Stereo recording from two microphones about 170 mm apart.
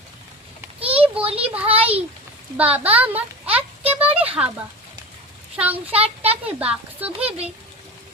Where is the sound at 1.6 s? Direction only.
35° right (ahead or behind).